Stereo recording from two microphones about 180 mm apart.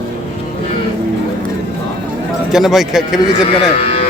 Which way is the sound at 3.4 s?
30° left (ahead or behind).